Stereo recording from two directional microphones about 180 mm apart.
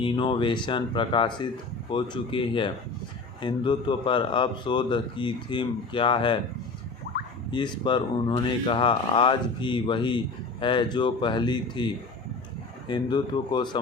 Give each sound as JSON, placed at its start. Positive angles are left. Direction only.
{"t": 0.0, "sound": "speech", "side_deg": 25}
{"t": 7.5, "sound": "speech", "side_deg": 25}
{"t": 12.9, "sound": "speech", "side_deg": 25}